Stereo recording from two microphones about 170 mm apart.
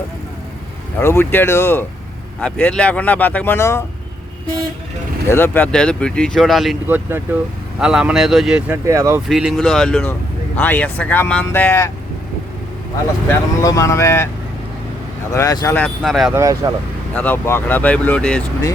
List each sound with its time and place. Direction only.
0.9 s speech: 15° left (ahead or behind)
5.3 s speech: 10° left (ahead or behind)
6.8 s speech: 10° right (ahead or behind)
9.3 s speech: centre (ahead or behind)
13.2 s speech: 20° left (ahead or behind)
15.3 s speech: 20° left (ahead or behind)
15.8 s speech: centre (ahead or behind)
16.3 s speech: 20° right (ahead or behind)
17.2 s speech: 10° left (ahead or behind)